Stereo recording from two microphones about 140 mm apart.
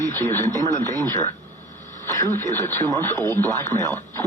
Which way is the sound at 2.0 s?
15° left (ahead or behind).